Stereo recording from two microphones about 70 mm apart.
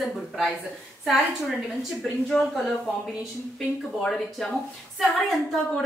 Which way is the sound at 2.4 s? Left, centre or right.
Centre.